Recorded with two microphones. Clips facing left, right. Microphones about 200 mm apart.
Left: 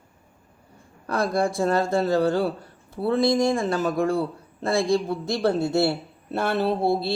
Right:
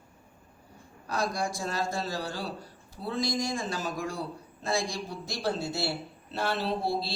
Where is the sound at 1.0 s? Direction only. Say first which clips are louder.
Left 8 dB; 55° left (ahead or behind).